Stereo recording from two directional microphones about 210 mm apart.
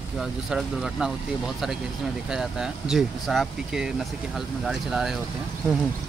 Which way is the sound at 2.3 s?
5° right (ahead or behind).